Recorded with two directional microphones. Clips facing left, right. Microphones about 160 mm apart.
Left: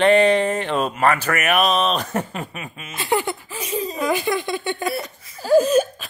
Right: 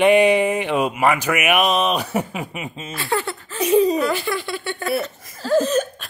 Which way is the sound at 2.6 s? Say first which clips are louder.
Right 4 dB; 25° right (ahead or behind).